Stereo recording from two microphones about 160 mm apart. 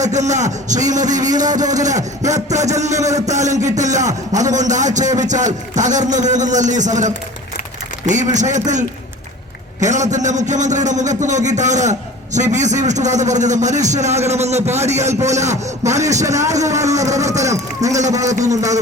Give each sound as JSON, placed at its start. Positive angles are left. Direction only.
{"t": 0.0, "sound": "a man's voice", "side_deg": -45}
{"t": 9.8, "sound": "a man's voice", "side_deg": -50}
{"t": 16.2, "sound": "a man's voice", "side_deg": -20}